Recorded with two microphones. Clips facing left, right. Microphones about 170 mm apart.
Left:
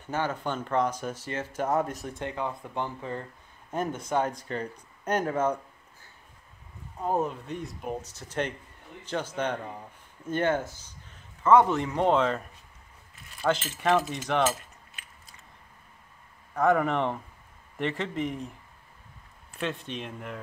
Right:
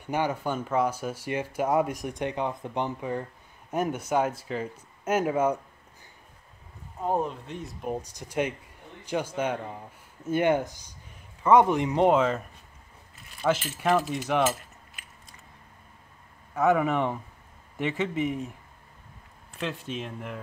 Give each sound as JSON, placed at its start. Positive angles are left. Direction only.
{"t": 0.0, "sound": "speech", "side_deg": -15}
{"t": 7.1, "sound": "speech", "side_deg": 0}
{"t": 8.0, "sound": "a man's voice", "side_deg": -15}
{"t": 12.2, "sound": "speech", "side_deg": -5}
{"t": 16.5, "sound": "speech", "side_deg": -5}
{"t": 19.6, "sound": "speech", "side_deg": 0}